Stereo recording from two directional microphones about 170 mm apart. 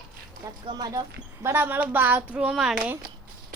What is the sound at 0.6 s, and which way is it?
A woman's voice, 25° right (ahead or behind).